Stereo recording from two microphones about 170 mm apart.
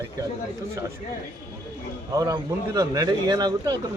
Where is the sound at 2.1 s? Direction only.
20° right (ahead or behind).